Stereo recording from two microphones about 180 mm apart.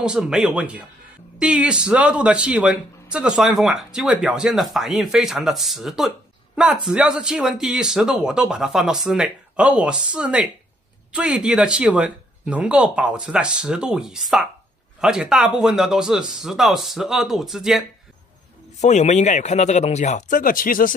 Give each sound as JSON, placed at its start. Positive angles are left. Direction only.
{"t": 0.0, "sound": "speech", "side_deg": -5}
{"t": 18.8, "sound": "speech", "side_deg": 40}